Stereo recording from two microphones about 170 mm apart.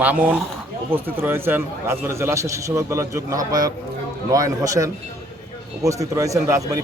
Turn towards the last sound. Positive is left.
turn(degrees=-20)  # may be behind; listen again after turning